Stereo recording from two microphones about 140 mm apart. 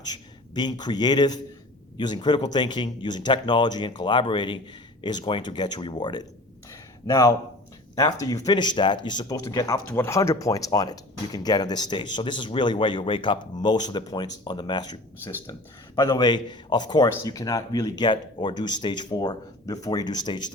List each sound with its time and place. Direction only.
0.0 s a man's voice: 30° left (ahead or behind)
16.0 s speech: 25° left (ahead or behind)